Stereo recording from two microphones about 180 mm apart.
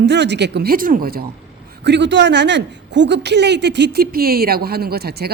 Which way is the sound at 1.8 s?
75° right (ahead or behind).